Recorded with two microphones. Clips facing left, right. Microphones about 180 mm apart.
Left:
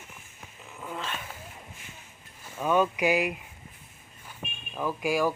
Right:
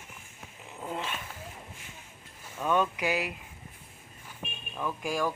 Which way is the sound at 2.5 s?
5° left (ahead or behind).